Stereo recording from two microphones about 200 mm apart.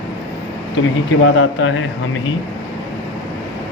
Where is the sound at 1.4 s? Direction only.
85° left.